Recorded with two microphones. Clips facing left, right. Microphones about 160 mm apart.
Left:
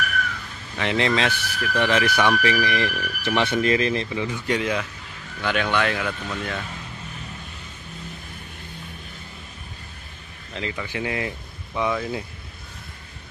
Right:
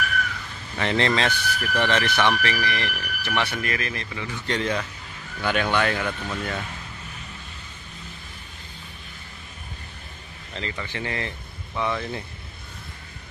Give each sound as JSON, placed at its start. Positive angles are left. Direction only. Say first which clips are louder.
{"t": 0.7, "sound": "speech", "louder": "left 1 dB", "side_deg": 5}
{"t": 10.5, "sound": "speech", "louder": "left 3 dB", "side_deg": 5}